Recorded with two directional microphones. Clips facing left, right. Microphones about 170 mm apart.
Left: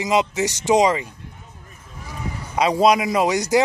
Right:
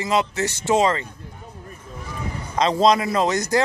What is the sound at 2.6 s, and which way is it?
Speech, 10° left (ahead or behind).